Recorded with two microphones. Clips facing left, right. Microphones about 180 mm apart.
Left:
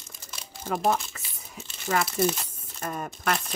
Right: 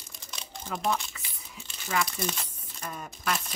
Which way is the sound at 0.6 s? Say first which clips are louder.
Left 5 dB; 45° left (ahead or behind).